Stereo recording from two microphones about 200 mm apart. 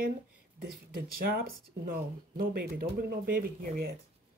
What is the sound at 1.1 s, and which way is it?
Speech, 45° right (ahead or behind).